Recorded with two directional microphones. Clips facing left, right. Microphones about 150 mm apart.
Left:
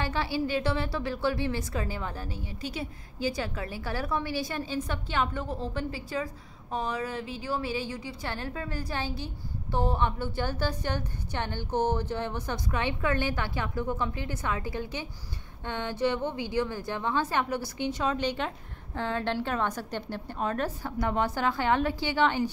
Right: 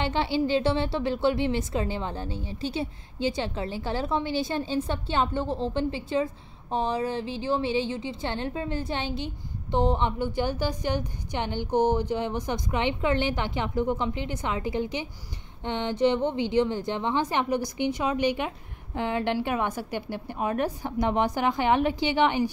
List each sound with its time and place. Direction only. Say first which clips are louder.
0.0 s a woman's voice: right 4 dB; 25° right (ahead or behind)